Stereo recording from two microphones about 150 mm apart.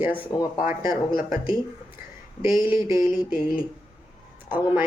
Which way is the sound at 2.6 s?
35° left (ahead or behind).